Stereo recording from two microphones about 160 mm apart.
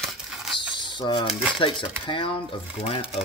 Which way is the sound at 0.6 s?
30° left (ahead or behind).